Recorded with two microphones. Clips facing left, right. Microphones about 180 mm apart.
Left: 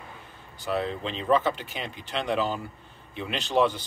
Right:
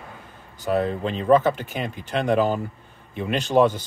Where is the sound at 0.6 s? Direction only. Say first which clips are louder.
Right 6 dB; 45° right (ahead or behind).